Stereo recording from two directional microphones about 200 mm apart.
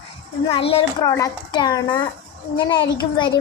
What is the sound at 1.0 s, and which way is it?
Speech, 15° left (ahead or behind).